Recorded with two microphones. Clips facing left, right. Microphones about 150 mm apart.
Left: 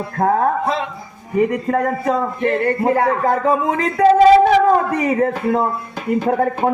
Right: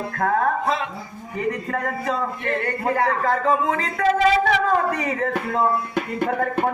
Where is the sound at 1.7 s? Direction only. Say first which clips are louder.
Left 7 dB; 35° left (ahead or behind).